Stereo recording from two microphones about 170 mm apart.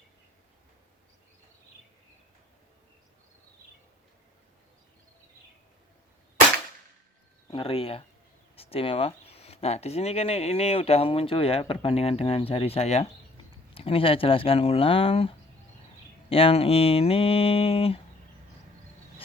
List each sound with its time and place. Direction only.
7.5 s speech: 35° left (ahead or behind)